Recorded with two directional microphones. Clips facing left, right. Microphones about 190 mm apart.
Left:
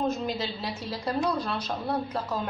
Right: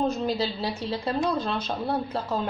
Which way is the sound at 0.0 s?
30° right (ahead or behind).